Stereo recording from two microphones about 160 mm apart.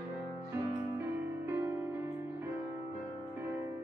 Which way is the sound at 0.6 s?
15° right (ahead or behind).